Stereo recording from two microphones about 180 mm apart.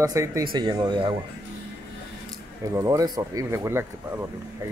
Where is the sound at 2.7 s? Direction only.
20° right (ahead or behind).